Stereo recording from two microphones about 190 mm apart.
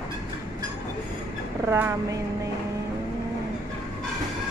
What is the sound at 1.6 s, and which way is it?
Speech, 15° right (ahead or behind).